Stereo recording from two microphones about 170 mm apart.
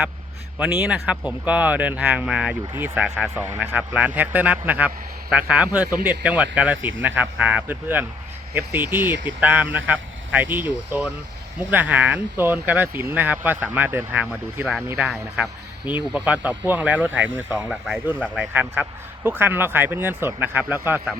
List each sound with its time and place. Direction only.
0.6 s speech: 5° right (ahead or behind)
15.8 s speech: 25° left (ahead or behind)
16.1 s speech: 10° right (ahead or behind)